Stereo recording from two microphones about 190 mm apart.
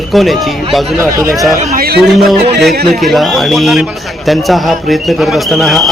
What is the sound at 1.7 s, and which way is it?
Speech, 55° right (ahead or behind).